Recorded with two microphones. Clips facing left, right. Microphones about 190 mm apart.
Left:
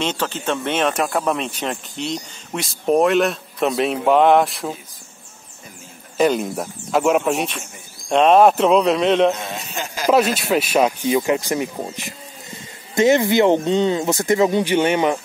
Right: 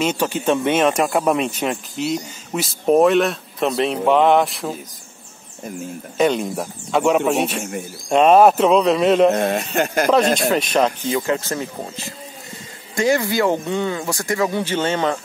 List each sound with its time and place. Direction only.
0.0 s speech: 10° right (ahead or behind)
6.1 s speech: centre (ahead or behind)
9.3 s speech: 55° right (ahead or behind)
10.1 s speech: 5° left (ahead or behind)